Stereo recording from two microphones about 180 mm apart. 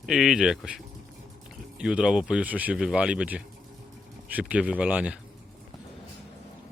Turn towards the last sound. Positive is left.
turn(degrees=-5)  # may be behind; listen again after turning